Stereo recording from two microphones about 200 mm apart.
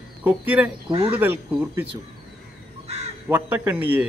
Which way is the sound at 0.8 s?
30° right (ahead or behind).